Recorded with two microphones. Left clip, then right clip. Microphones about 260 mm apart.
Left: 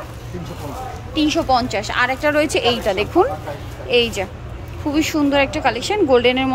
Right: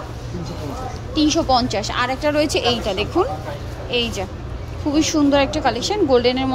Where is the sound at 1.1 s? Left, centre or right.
Centre.